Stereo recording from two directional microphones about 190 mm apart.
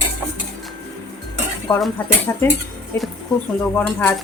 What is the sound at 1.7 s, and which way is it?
Speech, 20° left (ahead or behind).